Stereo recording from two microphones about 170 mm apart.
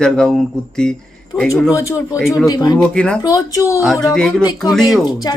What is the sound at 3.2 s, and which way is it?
Speech, 20° left (ahead or behind).